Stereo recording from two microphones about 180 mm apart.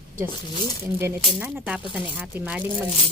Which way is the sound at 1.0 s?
10° right (ahead or behind).